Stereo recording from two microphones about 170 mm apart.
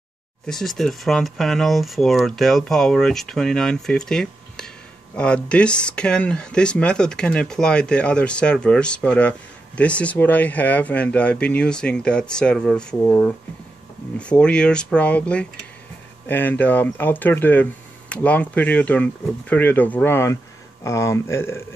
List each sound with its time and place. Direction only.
0.5 s speech: centre (ahead or behind)